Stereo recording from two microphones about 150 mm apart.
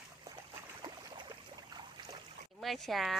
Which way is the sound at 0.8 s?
30° right (ahead or behind).